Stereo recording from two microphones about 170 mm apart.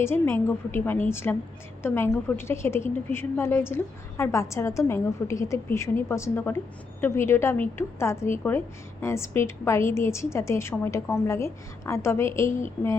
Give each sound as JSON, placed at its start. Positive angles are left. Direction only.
{"t": 0.0, "sound": "a woman's voice", "side_deg": 15}